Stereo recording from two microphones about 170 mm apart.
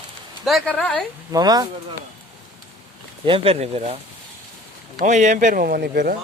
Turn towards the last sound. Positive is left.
turn(degrees=-70)  # may be behind; listen again after turning